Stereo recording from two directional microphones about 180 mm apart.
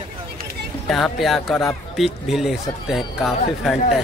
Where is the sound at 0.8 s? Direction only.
Centre (ahead or behind).